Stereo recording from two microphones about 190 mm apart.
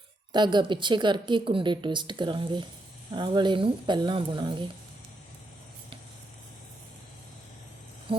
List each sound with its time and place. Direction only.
0.3 s a woman's voice: 25° right (ahead or behind)